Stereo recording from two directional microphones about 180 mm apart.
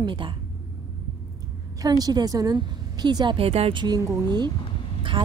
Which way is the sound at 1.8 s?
20° right (ahead or behind).